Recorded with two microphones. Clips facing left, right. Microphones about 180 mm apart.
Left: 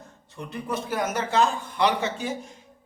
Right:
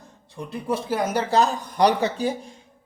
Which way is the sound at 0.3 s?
30° right (ahead or behind).